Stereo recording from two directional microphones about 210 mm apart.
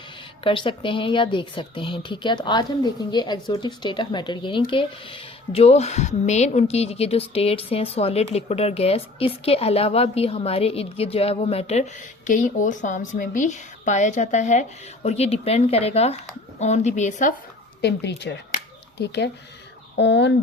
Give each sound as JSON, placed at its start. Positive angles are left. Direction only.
{"t": 0.4, "sound": "a woman's voice", "side_deg": 25}
{"t": 17.7, "sound": "speech", "side_deg": 55}
{"t": 18.5, "sound": "a sound", "side_deg": 50}
{"t": 20.0, "sound": "speech", "side_deg": 55}